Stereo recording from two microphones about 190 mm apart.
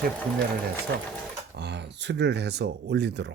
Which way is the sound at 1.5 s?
65° right (ahead or behind).